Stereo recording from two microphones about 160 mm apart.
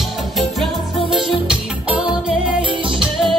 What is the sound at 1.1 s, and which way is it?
Music, 5° right (ahead or behind).